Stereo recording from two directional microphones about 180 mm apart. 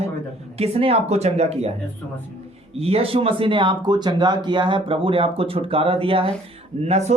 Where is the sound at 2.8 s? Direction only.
35° right (ahead or behind).